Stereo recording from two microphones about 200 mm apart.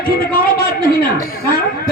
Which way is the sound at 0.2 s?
50° left (ahead or behind).